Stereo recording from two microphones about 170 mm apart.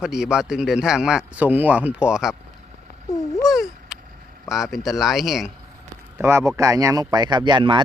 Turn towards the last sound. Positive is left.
turn(degrees=-25)  # may be behind; listen again after turning